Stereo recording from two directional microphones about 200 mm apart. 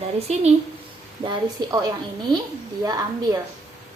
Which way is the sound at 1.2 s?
20° right (ahead or behind).